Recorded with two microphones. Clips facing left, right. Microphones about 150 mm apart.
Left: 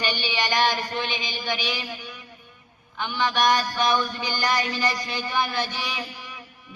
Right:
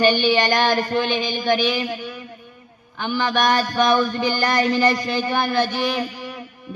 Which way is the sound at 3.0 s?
50° right (ahead or behind).